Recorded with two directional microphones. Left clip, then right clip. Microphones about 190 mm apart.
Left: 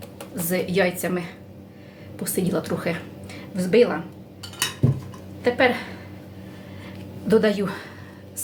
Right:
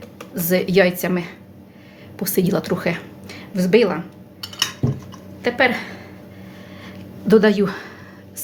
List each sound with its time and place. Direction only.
0.3 s a woman's voice: 45° right (ahead or behind)
5.4 s a woman's voice: 45° right (ahead or behind)
6.8 s a sound: 35° right (ahead or behind)